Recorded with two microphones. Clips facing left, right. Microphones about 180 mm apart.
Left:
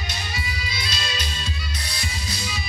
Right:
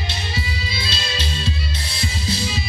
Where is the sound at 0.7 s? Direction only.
30° right (ahead or behind).